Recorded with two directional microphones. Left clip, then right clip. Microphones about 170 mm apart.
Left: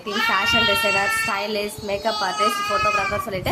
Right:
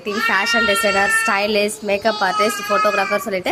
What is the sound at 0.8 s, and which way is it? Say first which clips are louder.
A child's voice: right 4 dB; 30° right (ahead or behind).